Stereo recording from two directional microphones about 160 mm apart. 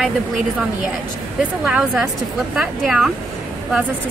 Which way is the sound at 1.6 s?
5° right (ahead or behind).